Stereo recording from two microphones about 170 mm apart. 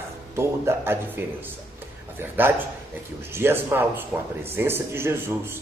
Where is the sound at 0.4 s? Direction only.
15° right (ahead or behind).